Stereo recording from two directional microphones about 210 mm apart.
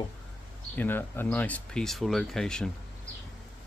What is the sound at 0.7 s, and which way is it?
Speech, 10° left (ahead or behind).